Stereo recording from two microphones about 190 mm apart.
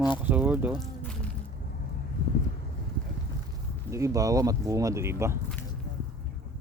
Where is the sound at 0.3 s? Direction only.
10° right (ahead or behind).